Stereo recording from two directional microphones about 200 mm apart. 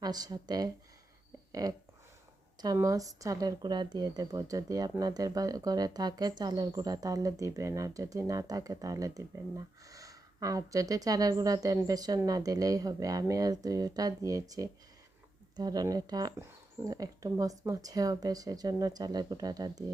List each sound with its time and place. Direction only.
0.0 s speech: 20° right (ahead or behind)